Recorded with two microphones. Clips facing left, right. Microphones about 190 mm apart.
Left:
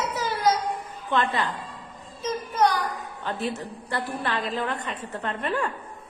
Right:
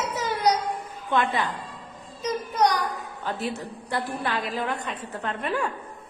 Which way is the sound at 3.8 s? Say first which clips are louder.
Right 1 dB; 15° right (ahead or behind).